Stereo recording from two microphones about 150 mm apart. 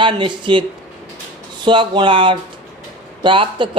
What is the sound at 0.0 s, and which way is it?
Speech, 35° right (ahead or behind).